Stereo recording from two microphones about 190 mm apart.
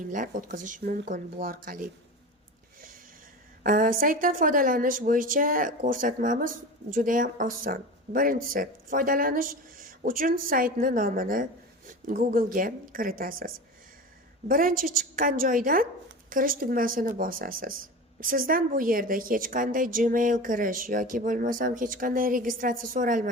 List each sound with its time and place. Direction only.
0.1 s a woman's voice: 45° right (ahead or behind)
3.6 s a woman's voice: 45° right (ahead or behind)